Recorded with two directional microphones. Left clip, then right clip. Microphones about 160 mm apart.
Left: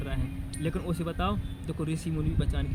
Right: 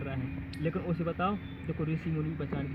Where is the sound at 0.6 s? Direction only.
30° left (ahead or behind).